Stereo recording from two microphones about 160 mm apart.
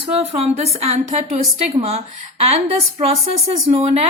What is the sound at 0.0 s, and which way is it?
Speech, 40° right (ahead or behind).